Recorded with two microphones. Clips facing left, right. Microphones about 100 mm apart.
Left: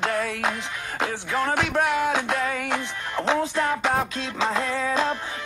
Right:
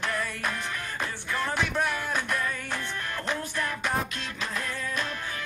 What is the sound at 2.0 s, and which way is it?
Music, 90° left.